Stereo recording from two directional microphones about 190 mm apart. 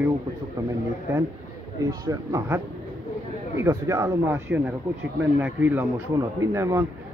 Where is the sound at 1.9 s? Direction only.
15° right (ahead or behind).